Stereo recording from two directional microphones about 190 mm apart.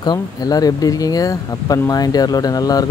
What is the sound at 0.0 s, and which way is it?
Speech, 20° left (ahead or behind).